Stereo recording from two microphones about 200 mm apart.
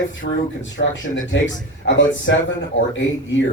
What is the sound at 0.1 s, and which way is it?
Speech, 65° left (ahead or behind).